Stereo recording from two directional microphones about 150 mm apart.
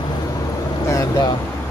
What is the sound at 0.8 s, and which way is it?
Vehicle, 20° left (ahead or behind).